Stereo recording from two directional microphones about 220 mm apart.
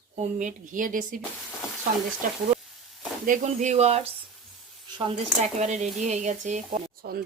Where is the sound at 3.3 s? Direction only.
30° right (ahead or behind).